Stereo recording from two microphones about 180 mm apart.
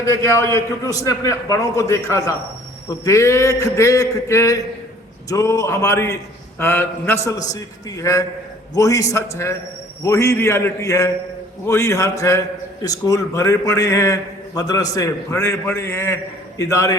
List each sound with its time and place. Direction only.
0.0 s a man's voice: 15° left (ahead or behind)